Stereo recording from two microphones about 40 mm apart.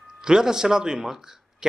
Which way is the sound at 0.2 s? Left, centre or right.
Centre.